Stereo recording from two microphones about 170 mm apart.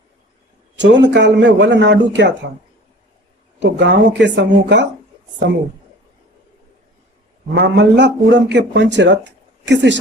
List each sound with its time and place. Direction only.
0.8 s a man's voice: 90° right
3.6 s a man's voice: 90° right
7.5 s a man's voice: 90° right